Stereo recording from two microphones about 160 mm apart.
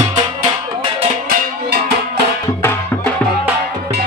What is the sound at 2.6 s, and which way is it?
Music, 15° left (ahead or behind).